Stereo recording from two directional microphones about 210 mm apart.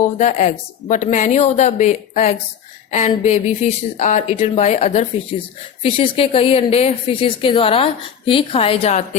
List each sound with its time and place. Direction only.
0.0 s a woman's voice: 35° left (ahead or behind)